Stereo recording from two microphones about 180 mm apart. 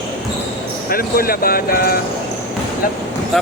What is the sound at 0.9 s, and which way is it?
Speech, 55° left (ahead or behind).